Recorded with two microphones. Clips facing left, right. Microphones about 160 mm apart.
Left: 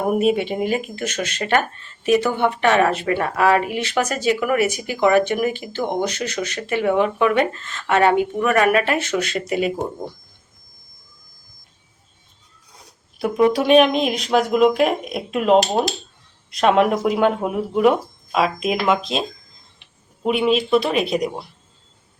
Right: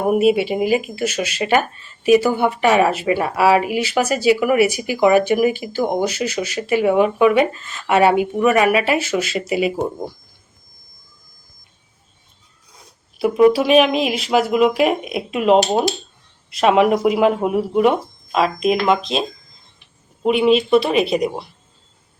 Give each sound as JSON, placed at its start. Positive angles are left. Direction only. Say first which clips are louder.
{"t": 0.1, "sound": "speech", "louder": "right 4 dB", "side_deg": -5}
{"t": 13.1, "sound": "speech", "louder": "right 4 dB", "side_deg": -5}
{"t": 20.2, "sound": "speech", "louder": "right 4 dB", "side_deg": 0}